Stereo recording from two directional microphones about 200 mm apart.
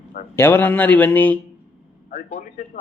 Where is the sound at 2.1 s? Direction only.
35° left (ahead or behind).